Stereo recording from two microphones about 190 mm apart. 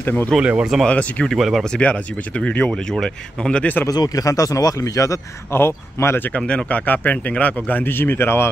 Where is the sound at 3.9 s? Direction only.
20° left (ahead or behind).